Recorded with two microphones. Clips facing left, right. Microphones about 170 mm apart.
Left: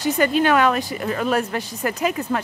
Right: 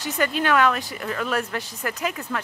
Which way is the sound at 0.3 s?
35° left (ahead or behind).